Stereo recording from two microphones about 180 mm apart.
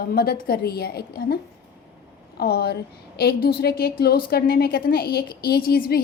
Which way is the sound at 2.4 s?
65° left (ahead or behind).